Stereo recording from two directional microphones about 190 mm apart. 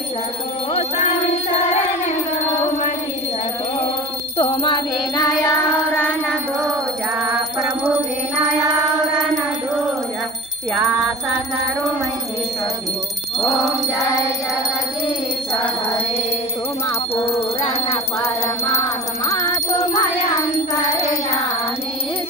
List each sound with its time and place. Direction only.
0.7 s music: 35° left (ahead or behind)
4.4 s a sound: 25° left (ahead or behind)
17.1 s music: 30° left (ahead or behind)
18.2 s music: 15° left (ahead or behind)
20.5 s child singing: 20° left (ahead or behind)